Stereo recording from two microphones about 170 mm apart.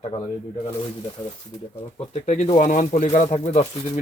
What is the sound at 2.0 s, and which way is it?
Speech, 40° left (ahead or behind).